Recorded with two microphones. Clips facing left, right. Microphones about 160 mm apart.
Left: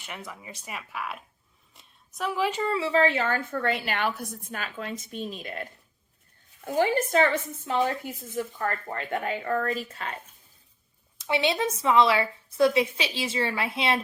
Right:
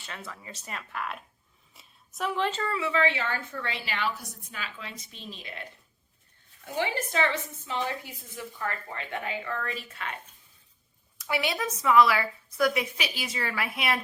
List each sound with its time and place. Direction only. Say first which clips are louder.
0.0 s a woman's voice: left 2 dB; 15° left (ahead or behind)
2.7 s a woman's voice: left 5 dB; 35° left (ahead or behind)
6.7 s a woman's voice: left 6 dB; 40° left (ahead or behind)
11.2 s a woman's voice: left 4 dB; 25° left (ahead or behind)